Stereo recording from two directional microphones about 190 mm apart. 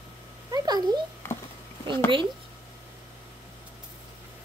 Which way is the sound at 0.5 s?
20° right (ahead or behind).